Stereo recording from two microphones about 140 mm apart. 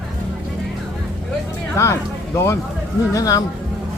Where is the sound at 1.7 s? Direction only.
20° left (ahead or behind).